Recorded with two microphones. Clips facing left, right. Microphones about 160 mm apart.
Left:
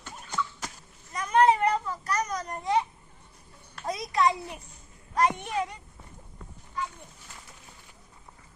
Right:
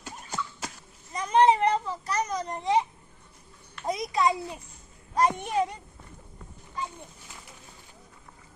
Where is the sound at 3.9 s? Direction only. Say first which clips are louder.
Even; 20° right (ahead or behind).